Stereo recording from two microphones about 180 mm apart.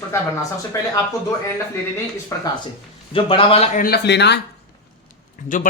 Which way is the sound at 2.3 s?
15° left (ahead or behind).